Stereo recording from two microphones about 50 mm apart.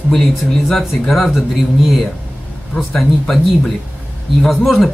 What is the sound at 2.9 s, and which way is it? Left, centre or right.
Speech, centre.